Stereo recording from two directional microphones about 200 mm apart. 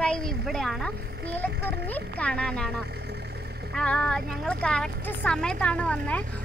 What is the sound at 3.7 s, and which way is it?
A woman's voice, 5° left (ahead or behind).